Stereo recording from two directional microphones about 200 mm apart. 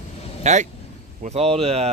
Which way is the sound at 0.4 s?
35° right (ahead or behind).